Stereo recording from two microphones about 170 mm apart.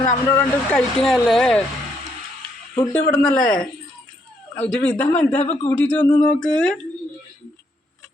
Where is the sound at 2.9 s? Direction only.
5° left (ahead or behind).